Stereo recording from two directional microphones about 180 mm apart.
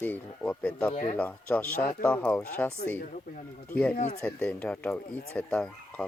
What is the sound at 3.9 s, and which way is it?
Speech, 40° left (ahead or behind).